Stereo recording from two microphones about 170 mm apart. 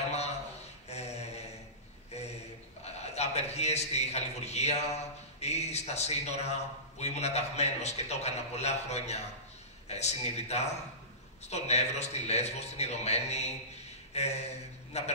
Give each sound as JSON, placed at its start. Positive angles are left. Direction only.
{"t": 0.1, "sound": "a sound", "side_deg": 40}
{"t": 0.8, "sound": "mantra", "side_deg": 40}
{"t": 2.8, "sound": "a man's voice", "side_deg": 40}